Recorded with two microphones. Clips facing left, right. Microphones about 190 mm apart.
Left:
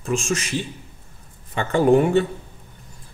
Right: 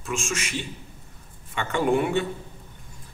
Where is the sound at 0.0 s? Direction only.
35° left (ahead or behind).